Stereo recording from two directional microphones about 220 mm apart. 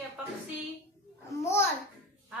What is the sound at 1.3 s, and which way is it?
Speech, 10° left (ahead or behind).